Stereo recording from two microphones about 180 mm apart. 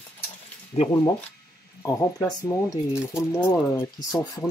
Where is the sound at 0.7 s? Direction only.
35° left (ahead or behind).